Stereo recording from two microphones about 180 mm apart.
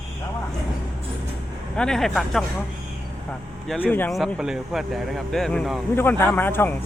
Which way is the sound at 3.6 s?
10° left (ahead or behind).